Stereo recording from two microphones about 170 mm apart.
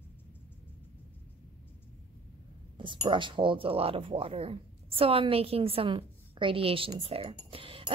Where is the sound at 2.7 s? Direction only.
30° right (ahead or behind).